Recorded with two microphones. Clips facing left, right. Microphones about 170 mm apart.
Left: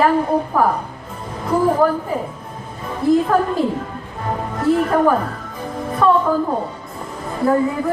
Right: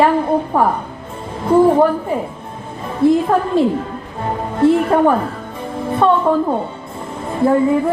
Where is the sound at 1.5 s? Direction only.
30° right (ahead or behind).